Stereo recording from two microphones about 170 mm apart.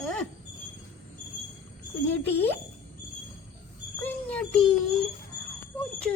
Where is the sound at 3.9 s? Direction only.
10° left (ahead or behind).